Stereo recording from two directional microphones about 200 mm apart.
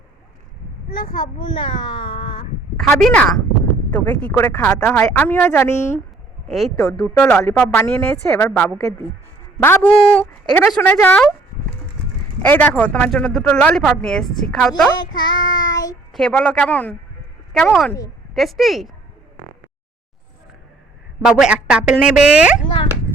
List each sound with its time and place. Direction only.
1.2 s a child's voice: 25° left (ahead or behind)
2.7 s speech: 5° left (ahead or behind)
6.5 s speech: centre (ahead or behind)
12.4 s speech: 5° left (ahead or behind)
15.0 s child singing: 25° left (ahead or behind)
15.7 s speech: 15° left (ahead or behind)
16.1 s speech: 5° left (ahead or behind)
21.2 s speech: 5° right (ahead or behind)